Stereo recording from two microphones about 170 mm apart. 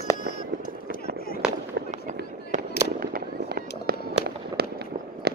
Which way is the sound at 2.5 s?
45° right (ahead or behind).